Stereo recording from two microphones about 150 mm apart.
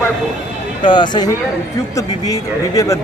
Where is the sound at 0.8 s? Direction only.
30° left (ahead or behind).